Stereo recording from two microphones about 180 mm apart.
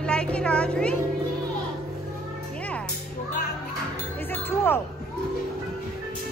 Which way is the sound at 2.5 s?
5° left (ahead or behind).